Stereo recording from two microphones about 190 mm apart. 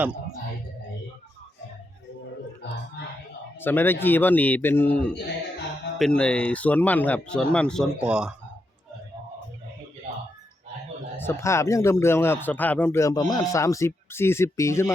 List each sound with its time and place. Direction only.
3.0 s whispering: 60° left (ahead or behind)
3.6 s speech: 10° left (ahead or behind)
11.2 s speech: 15° left (ahead or behind)